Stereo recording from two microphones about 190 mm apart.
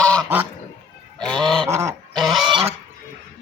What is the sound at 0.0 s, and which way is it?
Goose, 5° left (ahead or behind).